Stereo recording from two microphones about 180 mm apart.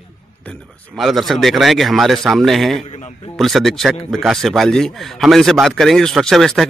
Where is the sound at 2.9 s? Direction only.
40° left (ahead or behind).